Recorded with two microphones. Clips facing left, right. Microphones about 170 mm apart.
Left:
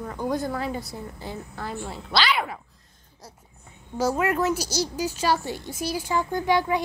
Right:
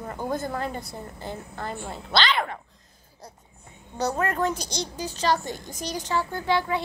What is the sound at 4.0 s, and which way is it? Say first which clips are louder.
Child singing: left 2 dB; 5° left (ahead or behind).